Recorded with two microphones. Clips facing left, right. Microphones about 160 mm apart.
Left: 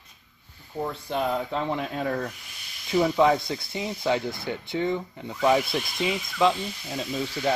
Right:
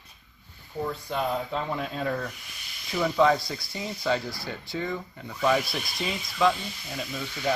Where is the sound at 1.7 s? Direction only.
20° left (ahead or behind).